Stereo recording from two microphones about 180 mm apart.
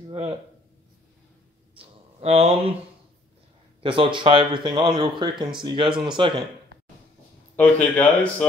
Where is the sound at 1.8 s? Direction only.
35° right (ahead or behind).